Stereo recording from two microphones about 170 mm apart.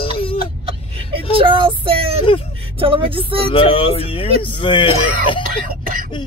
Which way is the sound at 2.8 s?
30° right (ahead or behind).